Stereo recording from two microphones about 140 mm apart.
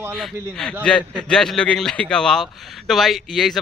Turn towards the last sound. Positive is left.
turn(degrees=5)  # may be behind; listen again after turning